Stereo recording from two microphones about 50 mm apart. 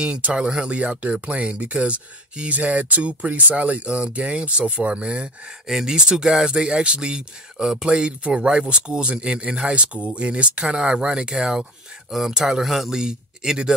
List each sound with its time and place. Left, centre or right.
0.0 s speech: right